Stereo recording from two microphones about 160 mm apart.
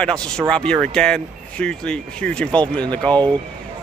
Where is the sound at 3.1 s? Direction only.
25° right (ahead or behind).